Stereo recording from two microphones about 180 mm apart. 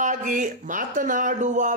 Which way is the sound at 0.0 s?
45° right (ahead or behind).